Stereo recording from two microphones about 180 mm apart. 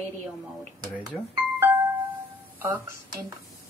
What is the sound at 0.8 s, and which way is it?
Speech, 25° right (ahead or behind).